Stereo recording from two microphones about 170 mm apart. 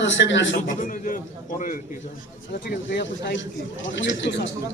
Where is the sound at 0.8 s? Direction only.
50° left (ahead or behind).